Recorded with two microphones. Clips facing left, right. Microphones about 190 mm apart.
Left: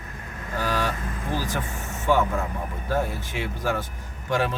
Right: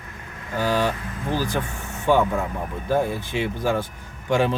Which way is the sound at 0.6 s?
15° right (ahead or behind).